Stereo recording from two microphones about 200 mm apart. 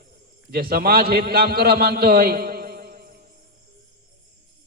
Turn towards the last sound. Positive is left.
turn(degrees=-50)  # may be behind; listen again after turning